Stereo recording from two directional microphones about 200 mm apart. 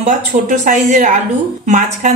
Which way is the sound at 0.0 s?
40° right (ahead or behind).